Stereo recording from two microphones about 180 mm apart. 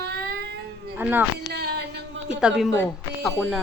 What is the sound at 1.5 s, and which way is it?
Speech, 65° right (ahead or behind).